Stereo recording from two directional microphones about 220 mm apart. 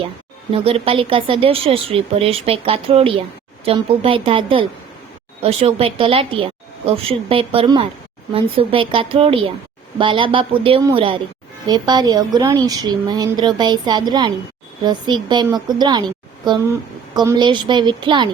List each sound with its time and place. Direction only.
0.5 s a woman's voice: 25° right (ahead or behind)